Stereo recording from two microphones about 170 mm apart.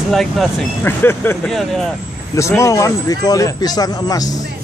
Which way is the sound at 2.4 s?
15° left (ahead or behind).